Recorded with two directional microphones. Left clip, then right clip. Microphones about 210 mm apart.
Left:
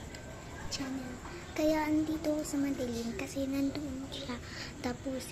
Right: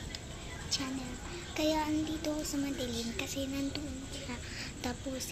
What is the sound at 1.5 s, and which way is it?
Child singing, 15° left (ahead or behind).